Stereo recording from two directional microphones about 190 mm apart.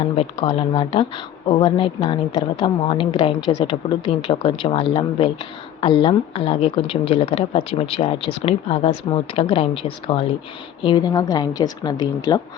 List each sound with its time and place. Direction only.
0.0 s speech: 30° left (ahead or behind)